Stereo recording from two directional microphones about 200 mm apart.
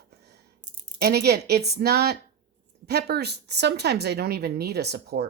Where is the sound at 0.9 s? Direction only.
50° right (ahead or behind).